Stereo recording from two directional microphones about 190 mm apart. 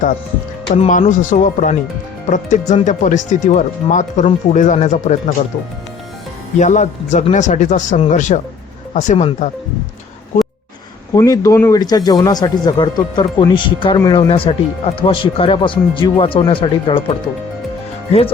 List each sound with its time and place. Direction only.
0.7 s speech: 40° left (ahead or behind)
6.6 s speech: 40° left (ahead or behind)
11.1 s speech: 15° left (ahead or behind)